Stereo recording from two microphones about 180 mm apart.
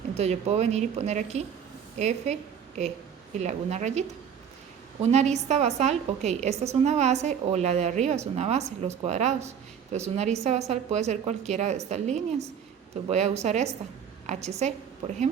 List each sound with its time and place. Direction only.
0.1 s a woman's voice: 35° right (ahead or behind)
5.0 s a woman's voice: 40° right (ahead or behind)